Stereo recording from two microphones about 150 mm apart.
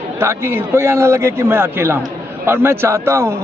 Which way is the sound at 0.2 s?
15° right (ahead or behind).